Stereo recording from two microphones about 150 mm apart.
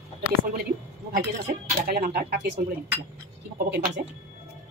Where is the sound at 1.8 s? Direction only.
90° right.